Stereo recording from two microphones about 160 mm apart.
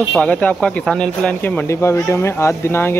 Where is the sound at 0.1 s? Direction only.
10° left (ahead or behind).